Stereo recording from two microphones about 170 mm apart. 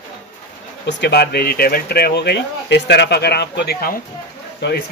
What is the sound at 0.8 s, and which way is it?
Speech, 75° left (ahead or behind).